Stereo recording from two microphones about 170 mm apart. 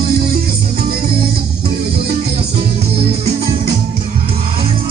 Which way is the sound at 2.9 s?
35° right (ahead or behind).